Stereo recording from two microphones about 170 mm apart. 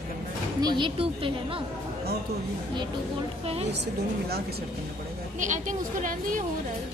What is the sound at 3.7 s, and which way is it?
Speech, 75° right (ahead or behind).